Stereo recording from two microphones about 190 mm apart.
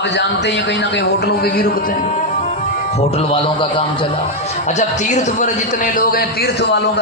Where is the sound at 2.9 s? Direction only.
35° left (ahead or behind).